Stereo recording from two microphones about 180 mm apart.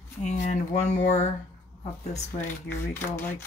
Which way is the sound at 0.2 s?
40° left (ahead or behind).